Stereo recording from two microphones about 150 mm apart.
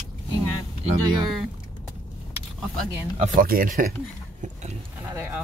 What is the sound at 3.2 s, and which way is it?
Speech, 65° right (ahead or behind).